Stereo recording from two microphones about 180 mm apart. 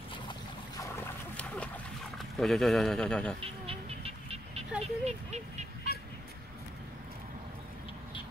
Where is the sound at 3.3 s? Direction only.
30° right (ahead or behind).